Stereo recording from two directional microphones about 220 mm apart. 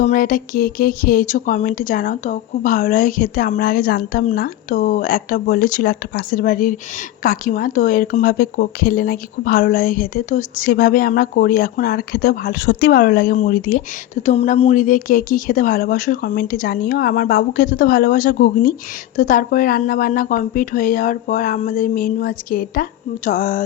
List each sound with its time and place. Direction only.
0.0 s speech: 40° left (ahead or behind)